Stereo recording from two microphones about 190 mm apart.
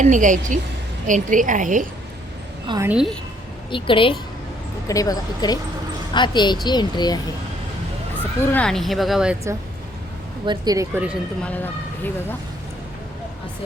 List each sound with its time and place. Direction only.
0.0 s a woman's voice: 40° right (ahead or behind)
2.6 s a woman's voice: 20° right (ahead or behind)
2.9 s speech: 5° right (ahead or behind)
3.7 s speech: 25° left (ahead or behind)
8.4 s speech: 5° left (ahead or behind)
10.4 s speech: 25° right (ahead or behind)
11.4 s speech: 10° left (ahead or behind)